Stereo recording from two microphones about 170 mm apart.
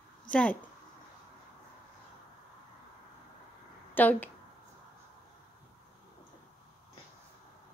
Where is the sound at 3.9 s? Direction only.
10° left (ahead or behind).